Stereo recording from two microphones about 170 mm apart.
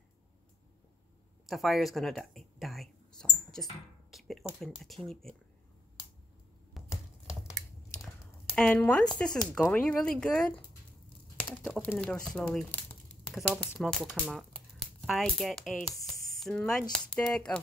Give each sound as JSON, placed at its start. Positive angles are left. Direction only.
{"t": 1.4, "sound": "speech", "side_deg": 0}
{"t": 6.8, "sound": "a sound", "side_deg": 0}
{"t": 8.5, "sound": "speech", "side_deg": 10}